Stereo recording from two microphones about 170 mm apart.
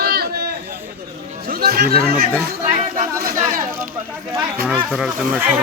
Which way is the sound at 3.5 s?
50° right (ahead or behind).